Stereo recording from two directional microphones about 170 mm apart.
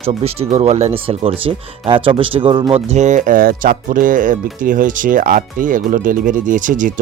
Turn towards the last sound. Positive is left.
turn(degrees=-50)  # may be behind; listen again after turning